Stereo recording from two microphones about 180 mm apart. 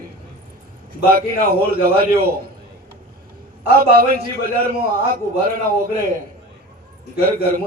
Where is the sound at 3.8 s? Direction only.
55° right (ahead or behind).